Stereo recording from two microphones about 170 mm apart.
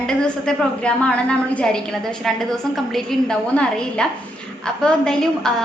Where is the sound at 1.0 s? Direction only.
5° left (ahead or behind).